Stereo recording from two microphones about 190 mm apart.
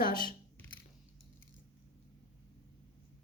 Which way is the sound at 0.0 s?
45° left (ahead or behind).